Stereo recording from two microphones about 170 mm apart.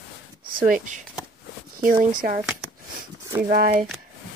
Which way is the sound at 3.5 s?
55° right (ahead or behind).